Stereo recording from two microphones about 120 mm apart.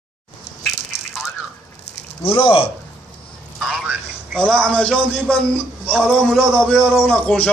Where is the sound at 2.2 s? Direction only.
50° left (ahead or behind).